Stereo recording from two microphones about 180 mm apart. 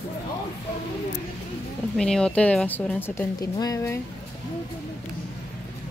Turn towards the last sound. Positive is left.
turn(degrees=15)  # may be behind; listen again after turning